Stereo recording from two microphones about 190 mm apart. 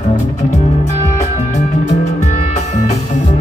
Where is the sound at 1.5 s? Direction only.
35° left (ahead or behind).